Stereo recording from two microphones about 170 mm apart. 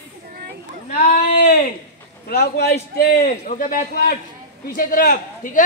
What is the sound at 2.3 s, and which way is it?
A man's voice, 65° left (ahead or behind).